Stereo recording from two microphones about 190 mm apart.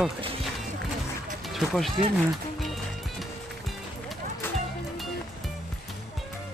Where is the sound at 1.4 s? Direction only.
Centre (ahead or behind).